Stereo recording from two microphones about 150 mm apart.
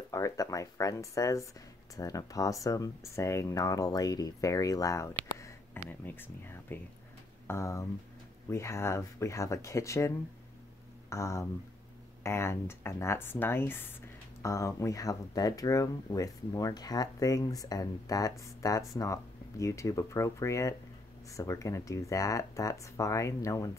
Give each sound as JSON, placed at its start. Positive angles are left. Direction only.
{"t": 0.1, "sound": "speech", "side_deg": 20}